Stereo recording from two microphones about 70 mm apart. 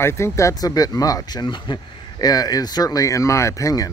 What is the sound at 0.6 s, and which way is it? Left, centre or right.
Speech, left.